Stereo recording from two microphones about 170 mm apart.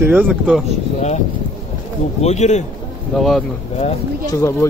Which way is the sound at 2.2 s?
40° left (ahead or behind).